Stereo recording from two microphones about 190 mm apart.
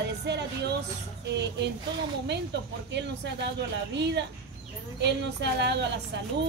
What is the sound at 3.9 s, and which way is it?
A woman's voice, 65° right (ahead or behind).